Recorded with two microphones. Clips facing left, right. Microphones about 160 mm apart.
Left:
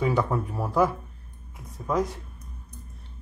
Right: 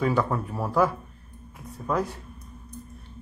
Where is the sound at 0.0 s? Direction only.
15° left (ahead or behind).